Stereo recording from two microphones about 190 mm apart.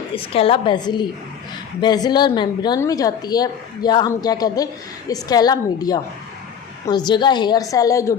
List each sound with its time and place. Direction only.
0.3 s a woman's voice: 30° left (ahead or behind)